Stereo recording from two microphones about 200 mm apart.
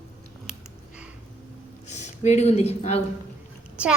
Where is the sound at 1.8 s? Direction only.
35° left (ahead or behind).